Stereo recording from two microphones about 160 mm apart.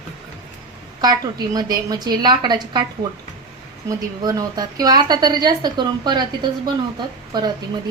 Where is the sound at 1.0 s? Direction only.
25° right (ahead or behind).